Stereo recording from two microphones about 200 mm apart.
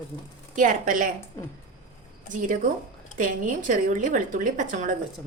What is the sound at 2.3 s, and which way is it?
A woman's voice, 40° right (ahead or behind).